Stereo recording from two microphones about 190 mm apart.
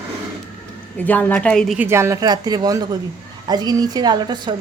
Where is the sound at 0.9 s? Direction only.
10° left (ahead or behind).